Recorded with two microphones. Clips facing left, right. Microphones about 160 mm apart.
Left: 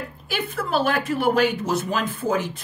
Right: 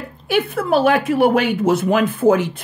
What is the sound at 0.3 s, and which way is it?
Speech, 55° right (ahead or behind).